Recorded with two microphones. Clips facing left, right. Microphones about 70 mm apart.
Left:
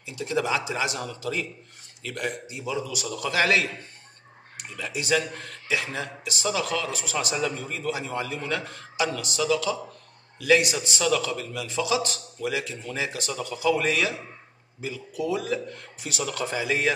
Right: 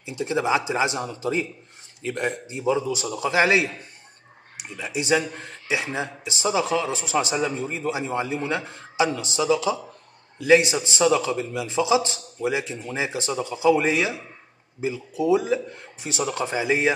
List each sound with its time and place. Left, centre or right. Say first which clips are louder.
0.0 s speech: right 3 dB; right